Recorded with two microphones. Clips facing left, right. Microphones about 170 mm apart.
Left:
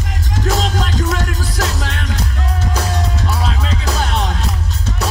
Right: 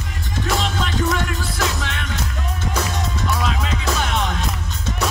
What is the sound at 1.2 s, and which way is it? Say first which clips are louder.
Music: left 2 dB; 40° left (ahead or behind).